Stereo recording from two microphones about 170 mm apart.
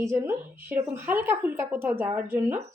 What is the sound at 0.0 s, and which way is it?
A woman's voice, 15° right (ahead or behind).